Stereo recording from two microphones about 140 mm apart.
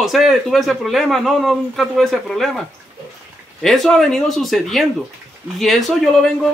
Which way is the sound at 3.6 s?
Centre (ahead or behind).